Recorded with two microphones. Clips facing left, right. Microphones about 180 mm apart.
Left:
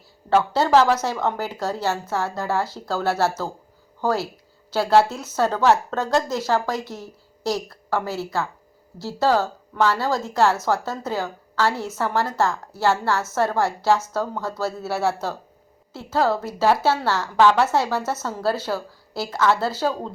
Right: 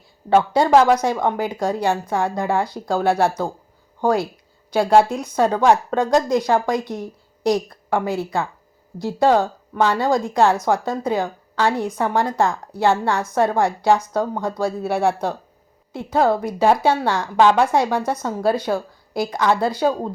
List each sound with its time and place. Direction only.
0.3 s a woman's voice: 15° right (ahead or behind)